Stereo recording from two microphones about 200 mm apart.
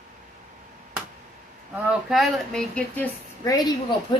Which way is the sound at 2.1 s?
Centre (ahead or behind).